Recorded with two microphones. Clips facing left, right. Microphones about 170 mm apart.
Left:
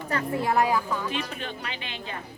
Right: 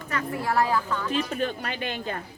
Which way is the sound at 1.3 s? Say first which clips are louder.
Right 6 dB; 45° right (ahead or behind).